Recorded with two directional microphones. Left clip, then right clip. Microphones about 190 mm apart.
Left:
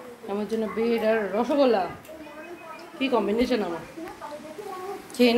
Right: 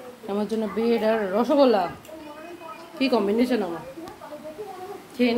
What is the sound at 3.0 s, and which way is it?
Speech, 25° right (ahead or behind).